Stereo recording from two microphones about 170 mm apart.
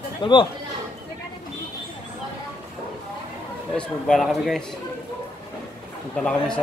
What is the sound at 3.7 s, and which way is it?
Speech, centre (ahead or behind).